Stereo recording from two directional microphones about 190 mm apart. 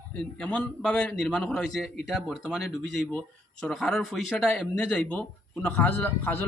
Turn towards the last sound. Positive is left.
turn(degrees=10)  # may be behind; listen again after turning